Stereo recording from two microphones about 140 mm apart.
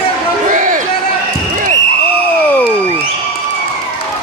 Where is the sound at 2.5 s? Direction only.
10° left (ahead or behind).